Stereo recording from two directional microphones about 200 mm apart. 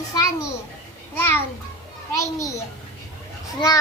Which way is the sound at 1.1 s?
10° left (ahead or behind).